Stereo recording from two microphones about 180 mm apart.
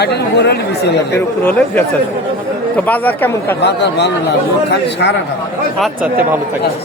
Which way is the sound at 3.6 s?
70° left (ahead or behind).